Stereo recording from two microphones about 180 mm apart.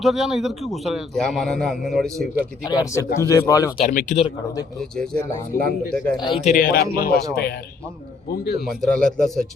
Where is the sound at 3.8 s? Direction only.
45° left (ahead or behind).